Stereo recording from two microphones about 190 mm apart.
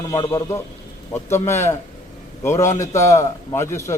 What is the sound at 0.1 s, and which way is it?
A man's voice, 20° left (ahead or behind).